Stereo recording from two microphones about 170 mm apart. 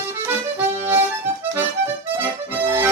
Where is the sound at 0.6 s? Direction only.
10° right (ahead or behind).